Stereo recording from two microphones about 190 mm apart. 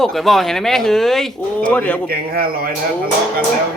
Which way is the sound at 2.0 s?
50° right (ahead or behind).